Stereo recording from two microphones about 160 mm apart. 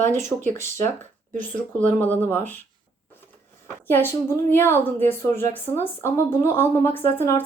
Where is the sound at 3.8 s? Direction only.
15° left (ahead or behind).